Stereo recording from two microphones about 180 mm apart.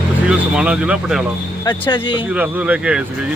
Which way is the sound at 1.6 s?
25° left (ahead or behind).